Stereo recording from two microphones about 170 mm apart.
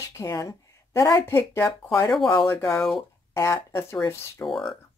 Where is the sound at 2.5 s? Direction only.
15° left (ahead or behind).